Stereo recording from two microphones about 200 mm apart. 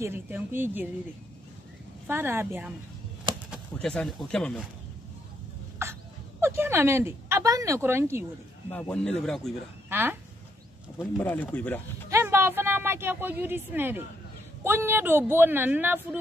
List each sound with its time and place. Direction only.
0.0 s speech: 10° right (ahead or behind)
2.0 s speech: 10° right (ahead or behind)
3.3 s a sound: 25° right (ahead or behind)
3.7 s speech: 5° left (ahead or behind)
5.8 s a sound: 15° right (ahead or behind)
6.4 s speech: 10° right (ahead or behind)
8.6 s speech: 10° left (ahead or behind)
9.8 s speech: 10° right (ahead or behind)
11.0 s speech: 10° left (ahead or behind)
12.1 s speech: 15° right (ahead or behind)